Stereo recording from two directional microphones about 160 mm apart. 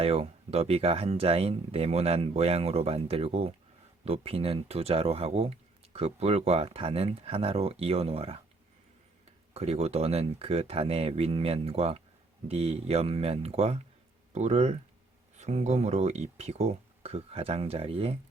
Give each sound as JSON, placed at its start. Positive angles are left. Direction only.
{"t": 0.0, "sound": "speech", "side_deg": -40}
{"t": 9.6, "sound": "speech", "side_deg": -40}